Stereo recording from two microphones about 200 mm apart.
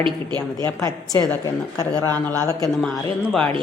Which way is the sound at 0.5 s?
15° left (ahead or behind).